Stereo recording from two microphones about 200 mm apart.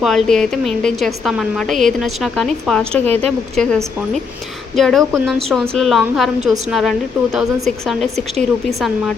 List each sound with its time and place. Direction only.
0.0 s a woman's voice: centre (ahead or behind)